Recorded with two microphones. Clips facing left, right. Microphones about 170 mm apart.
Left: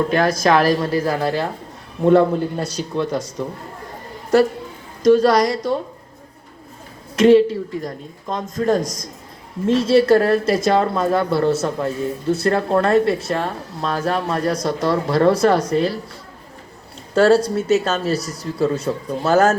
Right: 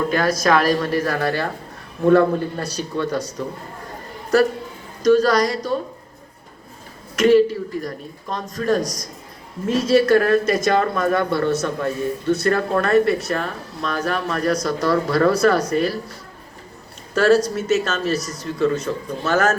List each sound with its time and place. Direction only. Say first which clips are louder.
0.1 s speech: left 2 dB; 25° left (ahead or behind)
5.0 s speech: left 2 dB; 25° left (ahead or behind)
7.2 s speech: left 2 dB; 25° left (ahead or behind)
17.2 s speech: left 2 dB; 30° left (ahead or behind)